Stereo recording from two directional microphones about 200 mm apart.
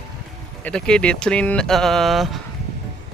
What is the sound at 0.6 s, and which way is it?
Speech, 5° left (ahead or behind).